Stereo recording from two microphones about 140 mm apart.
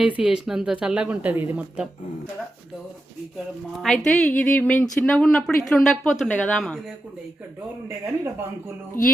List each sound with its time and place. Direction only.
0.0 s speech: 5° right (ahead or behind)
3.8 s a woman's voice: 5° left (ahead or behind)
9.0 s speech: 80° left